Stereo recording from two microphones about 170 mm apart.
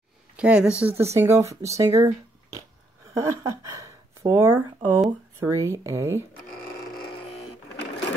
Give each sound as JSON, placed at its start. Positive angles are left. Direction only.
{"t": 0.4, "sound": "speech", "side_deg": -5}
{"t": 3.2, "sound": "speech", "side_deg": -15}